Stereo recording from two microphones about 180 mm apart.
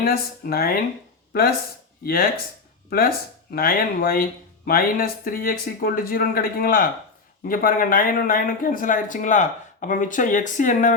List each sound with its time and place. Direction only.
0.0 s speech: 60° left (ahead or behind)
2.9 s speech: 55° left (ahead or behind)